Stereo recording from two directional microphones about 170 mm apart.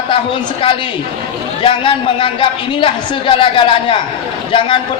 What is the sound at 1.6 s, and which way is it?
Speech, 30° left (ahead or behind).